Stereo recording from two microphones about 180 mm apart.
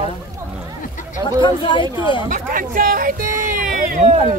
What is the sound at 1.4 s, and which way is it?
Speech, 25° left (ahead or behind).